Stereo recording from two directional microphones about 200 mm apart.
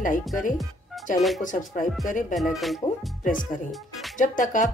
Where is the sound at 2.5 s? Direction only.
Centre (ahead or behind).